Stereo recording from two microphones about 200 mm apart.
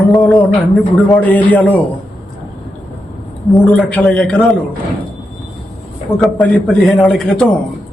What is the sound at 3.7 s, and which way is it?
Speech, 5° left (ahead or behind).